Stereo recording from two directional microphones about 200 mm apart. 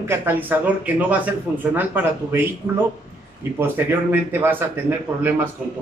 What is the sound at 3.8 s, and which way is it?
Speech, 10° right (ahead or behind).